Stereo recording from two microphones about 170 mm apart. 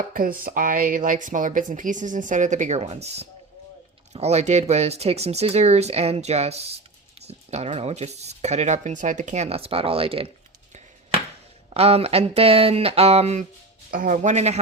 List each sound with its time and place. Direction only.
0.1 s speech: 55° right (ahead or behind); by 10.3 s 35° right (ahead or behind)
11.7 s speech: 35° right (ahead or behind)
13.9 s speech: 50° right (ahead or behind)